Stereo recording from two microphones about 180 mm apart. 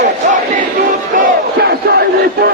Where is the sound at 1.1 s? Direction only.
60° right (ahead or behind).